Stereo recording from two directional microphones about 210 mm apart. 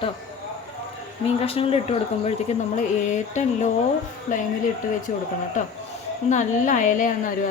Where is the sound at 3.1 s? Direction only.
35° left (ahead or behind).